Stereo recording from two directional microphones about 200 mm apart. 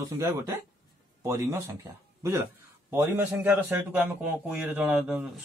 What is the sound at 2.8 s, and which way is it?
A man's voice, 10° right (ahead or behind).